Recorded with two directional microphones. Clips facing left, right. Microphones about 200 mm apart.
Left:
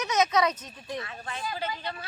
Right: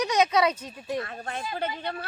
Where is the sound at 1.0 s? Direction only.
50° right (ahead or behind).